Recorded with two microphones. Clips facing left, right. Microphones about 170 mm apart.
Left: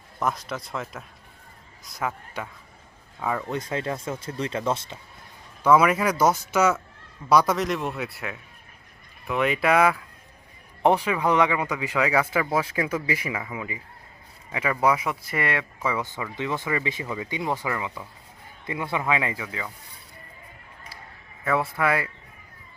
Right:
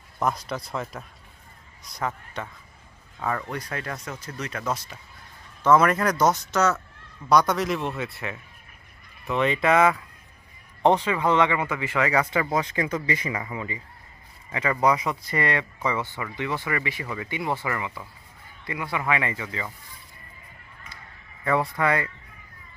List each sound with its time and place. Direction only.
0.2 s speech: centre (ahead or behind); by 4.9 s 25° left (ahead or behind)
5.6 s speech: 10° left (ahead or behind)
9.2 s speech: 5° left (ahead or behind)
16.0 s speech: 15° left (ahead or behind)
21.4 s speech: 5° left (ahead or behind)